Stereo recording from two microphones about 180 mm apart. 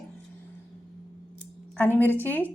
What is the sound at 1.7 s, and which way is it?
Speech, 10° left (ahead or behind).